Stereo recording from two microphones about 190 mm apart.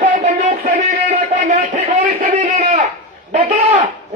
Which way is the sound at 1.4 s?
40° right (ahead or behind).